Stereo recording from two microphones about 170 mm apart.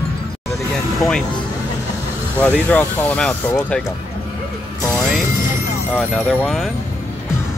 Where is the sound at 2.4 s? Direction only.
10° left (ahead or behind).